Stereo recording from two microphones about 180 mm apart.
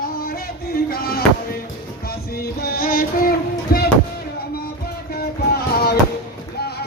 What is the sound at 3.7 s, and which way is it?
Music, 55° left (ahead or behind).